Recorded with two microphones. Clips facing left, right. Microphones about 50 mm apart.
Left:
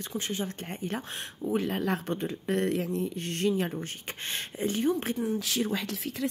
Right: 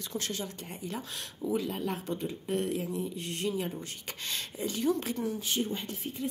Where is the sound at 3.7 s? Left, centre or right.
Left.